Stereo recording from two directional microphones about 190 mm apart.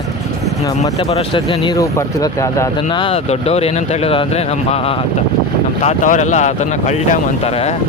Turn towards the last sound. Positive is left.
turn(degrees=40)  # may be behind; listen again after turning